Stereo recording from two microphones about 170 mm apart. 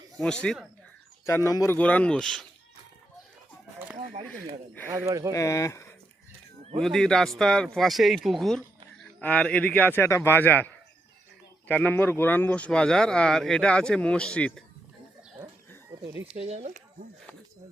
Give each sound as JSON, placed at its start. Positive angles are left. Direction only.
{"t": 0.2, "sound": "speech", "side_deg": 5}
{"t": 1.5, "sound": "speech", "side_deg": 20}
{"t": 3.9, "sound": "a sound", "side_deg": -50}
{"t": 4.9, "sound": "speech", "side_deg": -15}
{"t": 5.3, "sound": "speech", "side_deg": 20}
{"t": 6.7, "sound": "speech", "side_deg": 0}
{"t": 11.7, "sound": "speech", "side_deg": 10}
{"t": 16.2, "sound": "speech", "side_deg": -35}